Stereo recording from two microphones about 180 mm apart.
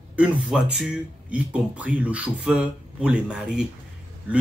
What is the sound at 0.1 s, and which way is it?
Speech, 5° right (ahead or behind).